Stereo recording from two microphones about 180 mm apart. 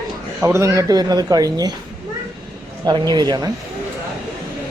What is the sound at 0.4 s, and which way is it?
Speech, 15° right (ahead or behind).